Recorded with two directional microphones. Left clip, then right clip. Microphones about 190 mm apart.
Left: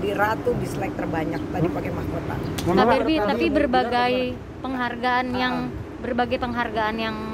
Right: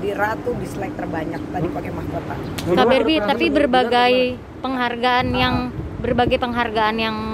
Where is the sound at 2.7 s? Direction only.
20° right (ahead or behind).